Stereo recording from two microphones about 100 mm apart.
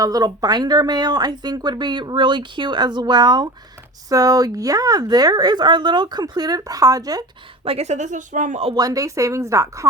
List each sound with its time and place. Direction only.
0.0 s speech: 40° right (ahead or behind)
7.6 s a woman's voice: 75° right (ahead or behind)
8.7 s speech: 40° right (ahead or behind)